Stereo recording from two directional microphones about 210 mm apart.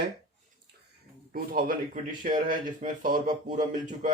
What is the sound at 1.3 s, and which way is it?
A man's voice, 40° right (ahead or behind).